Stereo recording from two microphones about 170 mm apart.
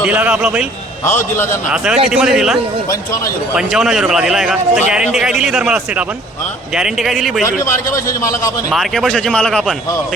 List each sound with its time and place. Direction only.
0.0 s a man's voice: 10° right (ahead or behind)
1.0 s a man's voice: 15° left (ahead or behind)
1.7 s a man's voice: 5° right (ahead or behind)
7.4 s a man's voice: 15° left (ahead or behind)
8.7 s a man's voice: centre (ahead or behind)